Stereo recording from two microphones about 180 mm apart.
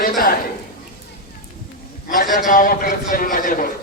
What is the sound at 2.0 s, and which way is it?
A man's voice, 50° left (ahead or behind).